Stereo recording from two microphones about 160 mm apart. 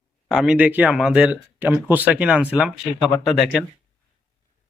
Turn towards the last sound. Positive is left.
turn(degrees=0)  # may be behind; listen again after turning